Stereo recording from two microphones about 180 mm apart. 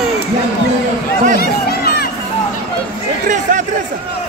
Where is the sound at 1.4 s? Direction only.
60° left (ahead or behind).